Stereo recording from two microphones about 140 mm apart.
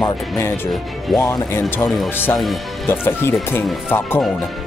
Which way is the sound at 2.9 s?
15° left (ahead or behind).